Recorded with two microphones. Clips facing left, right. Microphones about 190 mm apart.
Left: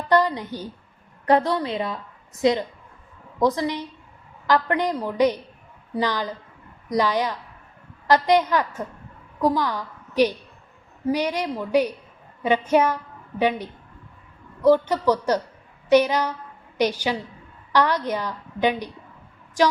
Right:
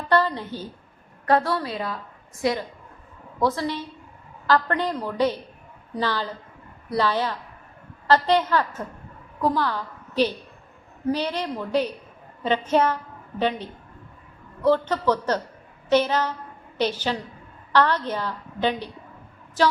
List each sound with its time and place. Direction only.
0.1 s a woman's voice: 15° left (ahead or behind)